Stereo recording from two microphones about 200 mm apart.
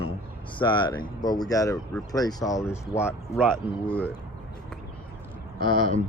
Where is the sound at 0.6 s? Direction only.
25° left (ahead or behind); by 4.1 s 5° left (ahead or behind).